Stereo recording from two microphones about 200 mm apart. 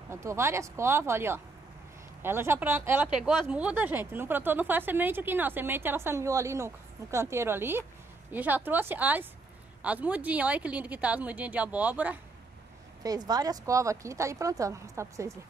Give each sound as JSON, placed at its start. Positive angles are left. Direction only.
{"t": 0.1, "sound": "speech", "side_deg": -15}
{"t": 13.0, "sound": "speech", "side_deg": -20}